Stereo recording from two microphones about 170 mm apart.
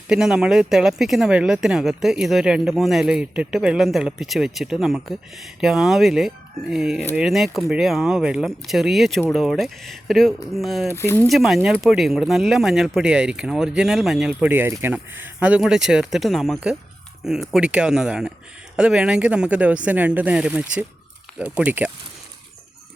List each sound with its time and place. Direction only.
0.1 s speech: 5° right (ahead or behind)
10.9 s speech: 15° left (ahead or behind)
11.3 s speech: centre (ahead or behind)